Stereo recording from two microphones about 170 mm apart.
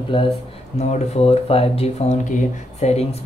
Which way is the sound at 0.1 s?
30° left (ahead or behind).